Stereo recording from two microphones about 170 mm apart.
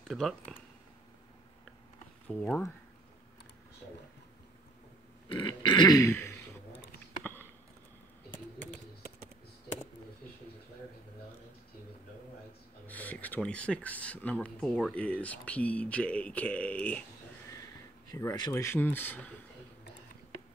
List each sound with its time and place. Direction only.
0.1 s speech: centre (ahead or behind)
2.2 s speech: 5° left (ahead or behind)
5.3 s a sound: 25° left (ahead or behind)
6.7 s a sound: 90° left
12.8 s speech: 10° left (ahead or behind)
18.1 s speech: 20° left (ahead or behind)